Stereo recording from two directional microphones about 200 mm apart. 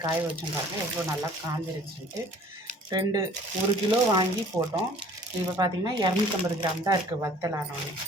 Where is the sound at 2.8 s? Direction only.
20° right (ahead or behind).